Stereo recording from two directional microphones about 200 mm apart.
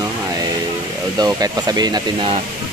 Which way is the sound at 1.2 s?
20° right (ahead or behind).